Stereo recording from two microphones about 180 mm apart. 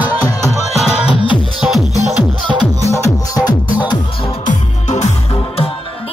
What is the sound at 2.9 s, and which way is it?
Music, 15° left (ahead or behind).